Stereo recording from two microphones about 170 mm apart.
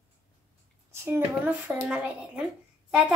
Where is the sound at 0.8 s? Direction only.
15° right (ahead or behind).